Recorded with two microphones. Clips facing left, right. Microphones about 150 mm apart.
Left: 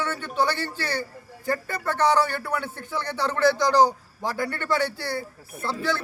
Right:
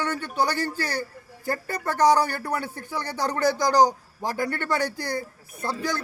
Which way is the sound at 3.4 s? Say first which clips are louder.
Left 2 dB; 40° right (ahead or behind).